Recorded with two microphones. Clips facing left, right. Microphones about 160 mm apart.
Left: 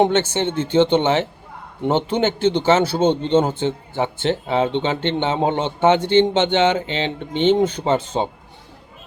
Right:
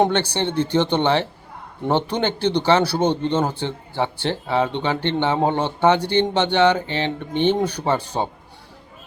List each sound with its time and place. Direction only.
0.0 s speech: 20° left (ahead or behind)
3.0 s speech: 15° right (ahead or behind)
3.2 s speech: 20° left (ahead or behind)